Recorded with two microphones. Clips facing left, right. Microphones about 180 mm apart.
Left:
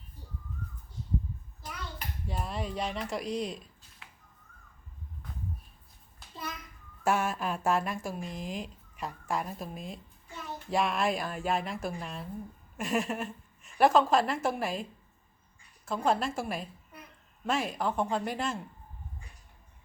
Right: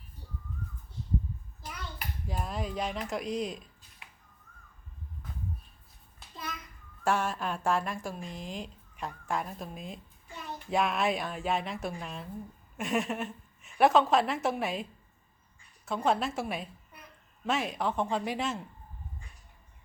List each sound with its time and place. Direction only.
2.2 s speech: centre (ahead or behind)
4.0 s finger snapping: 15° right (ahead or behind)
7.0 s a woman's voice: 5° left (ahead or behind)
15.9 s speech: centre (ahead or behind)